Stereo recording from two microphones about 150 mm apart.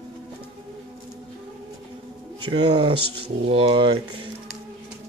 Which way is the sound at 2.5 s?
30° right (ahead or behind).